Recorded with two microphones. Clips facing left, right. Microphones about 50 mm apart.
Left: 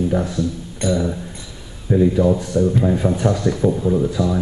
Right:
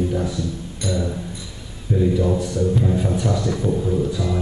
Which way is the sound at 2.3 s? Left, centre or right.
Left.